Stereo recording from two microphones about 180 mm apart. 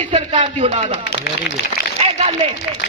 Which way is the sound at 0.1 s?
30° right (ahead or behind).